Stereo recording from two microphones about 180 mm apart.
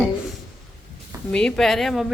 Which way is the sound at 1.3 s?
5° left (ahead or behind).